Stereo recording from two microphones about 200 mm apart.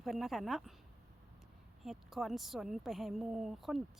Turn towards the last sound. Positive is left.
turn(degrees=0)  # may be behind; listen again after turning